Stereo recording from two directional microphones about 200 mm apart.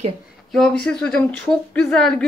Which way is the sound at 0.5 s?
Centre (ahead or behind).